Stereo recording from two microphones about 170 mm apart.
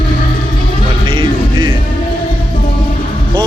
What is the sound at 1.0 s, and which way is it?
Music, 30° right (ahead or behind).